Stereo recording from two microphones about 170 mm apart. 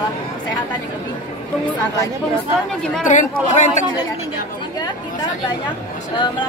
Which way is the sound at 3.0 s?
50° left (ahead or behind).